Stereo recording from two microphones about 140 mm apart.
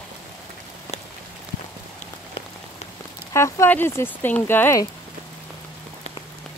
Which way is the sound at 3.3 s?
20° left (ahead or behind).